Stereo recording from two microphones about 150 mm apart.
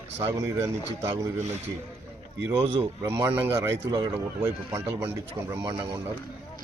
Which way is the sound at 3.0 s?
20° right (ahead or behind).